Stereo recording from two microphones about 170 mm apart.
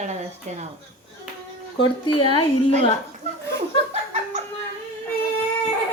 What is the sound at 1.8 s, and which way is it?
Speech, 30° left (ahead or behind).